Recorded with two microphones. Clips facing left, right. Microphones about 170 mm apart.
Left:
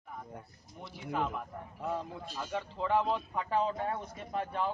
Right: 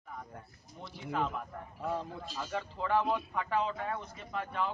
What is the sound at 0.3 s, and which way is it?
A man's voice, 15° left (ahead or behind).